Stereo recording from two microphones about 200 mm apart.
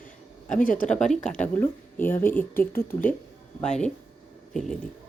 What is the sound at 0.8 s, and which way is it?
Speech, 5° left (ahead or behind).